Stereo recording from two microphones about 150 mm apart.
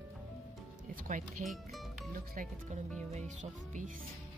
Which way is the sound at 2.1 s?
70° right (ahead or behind).